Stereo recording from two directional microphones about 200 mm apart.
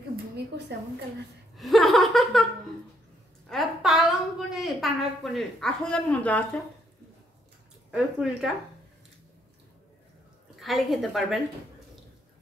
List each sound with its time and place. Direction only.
0.7 s a woman's voice: 55° right (ahead or behind)
1.6 s laughter: centre (ahead or behind)
3.4 s a sound: centre (ahead or behind)
7.9 s a woman's voice: centre (ahead or behind)
10.5 s a woman's voice: centre (ahead or behind)